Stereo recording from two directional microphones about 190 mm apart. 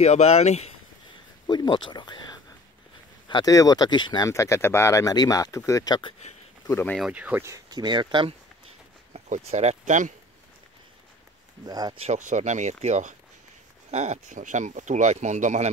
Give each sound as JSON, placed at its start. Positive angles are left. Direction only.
{"t": 0.0, "sound": "speech", "side_deg": 35}
{"t": 1.5, "sound": "speech", "side_deg": 25}
{"t": 6.7, "sound": "speech", "side_deg": 10}
{"t": 7.0, "sound": "speech", "side_deg": -5}
{"t": 9.1, "sound": "speech", "side_deg": -35}
{"t": 11.6, "sound": "speech", "side_deg": -20}
{"t": 12.1, "sound": "speech", "side_deg": -40}